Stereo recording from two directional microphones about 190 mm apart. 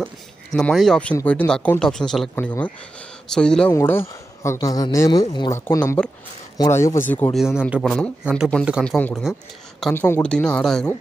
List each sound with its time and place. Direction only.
0.0 s speech: 5° left (ahead or behind)
7.3 s speech: centre (ahead or behind)
9.9 s speech: 10° left (ahead or behind)